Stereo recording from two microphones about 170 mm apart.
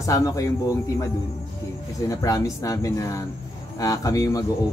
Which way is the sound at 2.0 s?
20° left (ahead or behind).